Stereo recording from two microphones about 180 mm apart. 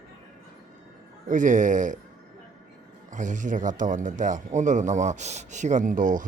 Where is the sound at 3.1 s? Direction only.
45° right (ahead or behind).